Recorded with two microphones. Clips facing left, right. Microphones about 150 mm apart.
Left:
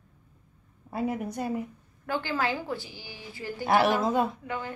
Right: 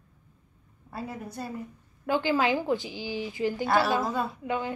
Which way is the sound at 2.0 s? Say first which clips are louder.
Right 4 dB; 15° right (ahead or behind).